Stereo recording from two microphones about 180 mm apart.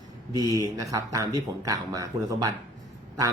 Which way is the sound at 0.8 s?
20° right (ahead or behind).